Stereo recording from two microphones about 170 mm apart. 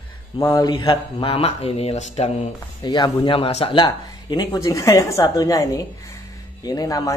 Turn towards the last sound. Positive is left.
turn(degrees=20)  # may be behind; listen again after turning